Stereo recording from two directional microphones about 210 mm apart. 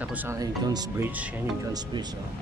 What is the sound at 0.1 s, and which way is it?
Speech, 15° right (ahead or behind).